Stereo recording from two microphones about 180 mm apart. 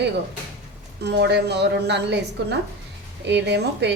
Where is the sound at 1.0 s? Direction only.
70° right (ahead or behind).